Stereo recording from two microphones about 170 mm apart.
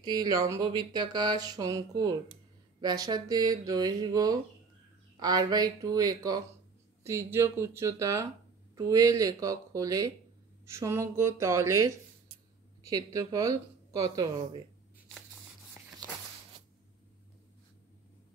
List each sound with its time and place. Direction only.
0.0 s speech: 25° right (ahead or behind)
12.9 s speech: 20° right (ahead or behind)